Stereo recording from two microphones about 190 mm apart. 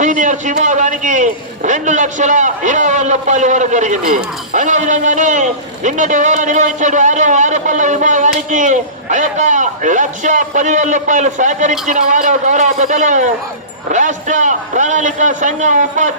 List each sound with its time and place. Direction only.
0.0 s a man's voice: 40° right (ahead or behind)